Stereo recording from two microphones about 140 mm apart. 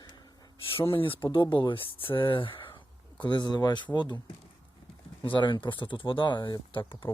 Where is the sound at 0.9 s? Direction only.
40° left (ahead or behind).